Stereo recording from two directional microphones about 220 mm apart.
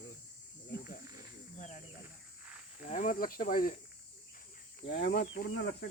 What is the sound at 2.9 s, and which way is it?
Cricket, 35° left (ahead or behind).